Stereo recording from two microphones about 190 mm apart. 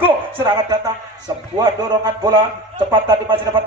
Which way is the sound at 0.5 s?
20° right (ahead or behind).